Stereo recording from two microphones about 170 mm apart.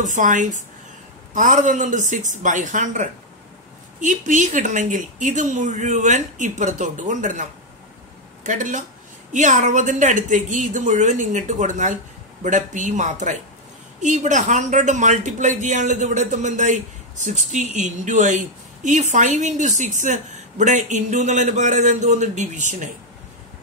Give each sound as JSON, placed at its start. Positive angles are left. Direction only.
{"t": 0.0, "sound": "speech", "side_deg": -45}
{"t": 8.5, "sound": "speech", "side_deg": -45}